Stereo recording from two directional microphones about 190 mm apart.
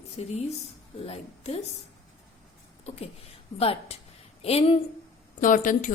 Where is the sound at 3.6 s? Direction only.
30° left (ahead or behind).